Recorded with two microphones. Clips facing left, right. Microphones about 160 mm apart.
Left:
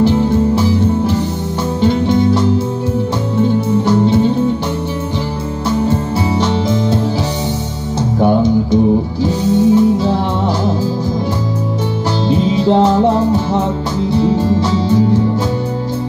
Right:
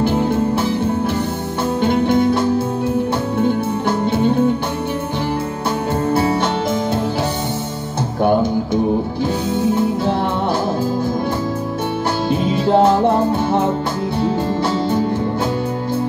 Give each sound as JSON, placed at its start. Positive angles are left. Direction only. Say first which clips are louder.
{"t": 1.8, "sound": "music", "louder": "left 2 dB", "side_deg": -55}
{"t": 5.9, "sound": "music", "louder": "left 1 dB", "side_deg": -55}
{"t": 9.2, "sound": "music", "louder": "left 5 dB", "side_deg": -55}
{"t": 12.3, "sound": "music", "louder": "left 4 dB", "side_deg": -55}